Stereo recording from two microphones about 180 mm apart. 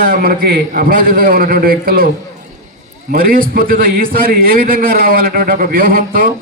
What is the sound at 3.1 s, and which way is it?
A man's voice, 55° right (ahead or behind).